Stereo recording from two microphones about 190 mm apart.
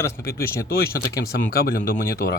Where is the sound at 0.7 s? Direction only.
50° left (ahead or behind).